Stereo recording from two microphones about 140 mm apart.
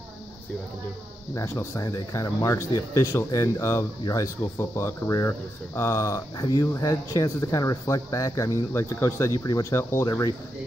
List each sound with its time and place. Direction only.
1.3 s speech: 20° left (ahead or behind)